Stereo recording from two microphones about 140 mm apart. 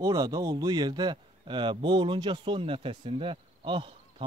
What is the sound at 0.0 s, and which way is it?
A man's voice, 25° right (ahead or behind).